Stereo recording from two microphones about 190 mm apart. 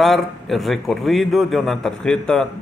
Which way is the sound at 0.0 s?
Centre (ahead or behind).